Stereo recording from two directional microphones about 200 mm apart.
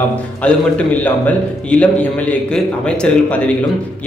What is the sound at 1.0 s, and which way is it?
A man's voice, 5° left (ahead or behind).